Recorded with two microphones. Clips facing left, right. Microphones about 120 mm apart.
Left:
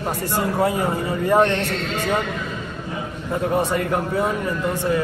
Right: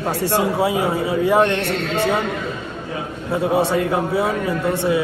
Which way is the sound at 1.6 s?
70° right (ahead or behind).